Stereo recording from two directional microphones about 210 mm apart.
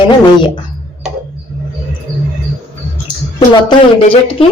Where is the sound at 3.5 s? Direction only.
25° left (ahead or behind).